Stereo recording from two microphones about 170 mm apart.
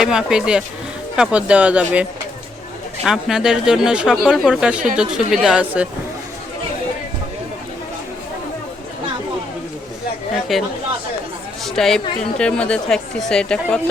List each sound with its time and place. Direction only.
0.0 s speech: 5° right (ahead or behind)
10.5 s a woman's voice: centre (ahead or behind)